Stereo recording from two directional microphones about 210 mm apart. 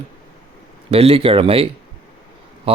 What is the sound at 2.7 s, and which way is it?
Speech, 25° right (ahead or behind).